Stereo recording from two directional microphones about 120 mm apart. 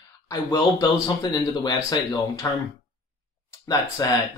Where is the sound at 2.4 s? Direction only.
25° left (ahead or behind).